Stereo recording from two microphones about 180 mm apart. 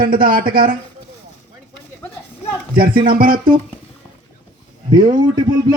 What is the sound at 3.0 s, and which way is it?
Speech, 50° right (ahead or behind).